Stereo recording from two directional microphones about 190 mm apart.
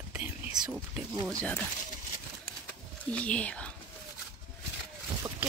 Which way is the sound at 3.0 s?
5° left (ahead or behind).